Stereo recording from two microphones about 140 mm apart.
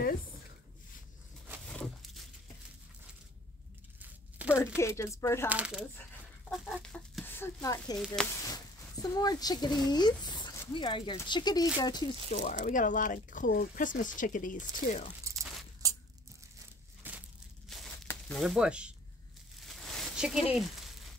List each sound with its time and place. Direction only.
1.7 s a sound: 5° left (ahead or behind)
4.0 s a sound: 10° right (ahead or behind)
4.7 s speech: 20° left (ahead or behind)
5.5 s speech: 5° right (ahead or behind)
6.5 s chicken: centre (ahead or behind)
7.2 s speech: 20° left (ahead or behind)
12.3 s speech: 65° left (ahead or behind)
15.3 s a sound: 20° right (ahead or behind)
15.8 s coin: 25° right (ahead or behind)
17.0 s crushing: 15° right (ahead or behind)
17.6 s crumpling: centre (ahead or behind)
18.3 s speech: centre (ahead or behind)
19.6 s a sound: centre (ahead or behind)